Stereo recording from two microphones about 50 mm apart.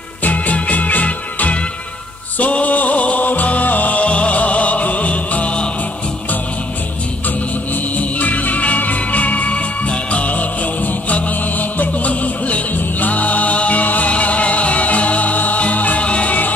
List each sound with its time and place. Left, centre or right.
0.2 s music: left
8.0 s music: left